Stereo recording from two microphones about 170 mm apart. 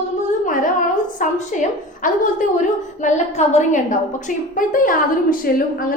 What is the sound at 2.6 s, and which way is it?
A woman's voice, 45° left (ahead or behind).